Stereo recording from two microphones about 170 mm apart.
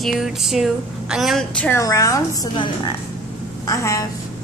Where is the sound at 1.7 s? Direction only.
20° left (ahead or behind).